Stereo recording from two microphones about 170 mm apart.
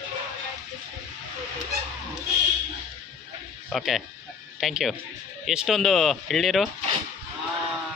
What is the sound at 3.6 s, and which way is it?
Speech, centre (ahead or behind).